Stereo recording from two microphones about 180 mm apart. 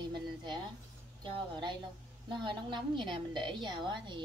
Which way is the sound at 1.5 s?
25° right (ahead or behind).